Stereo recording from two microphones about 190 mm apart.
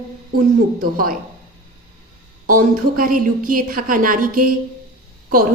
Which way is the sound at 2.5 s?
45° right (ahead or behind).